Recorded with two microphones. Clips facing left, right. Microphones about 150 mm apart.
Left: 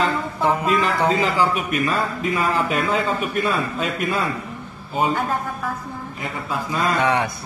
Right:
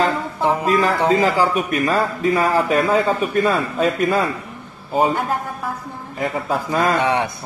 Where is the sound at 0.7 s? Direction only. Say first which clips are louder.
Right 3 dB; 35° right (ahead or behind).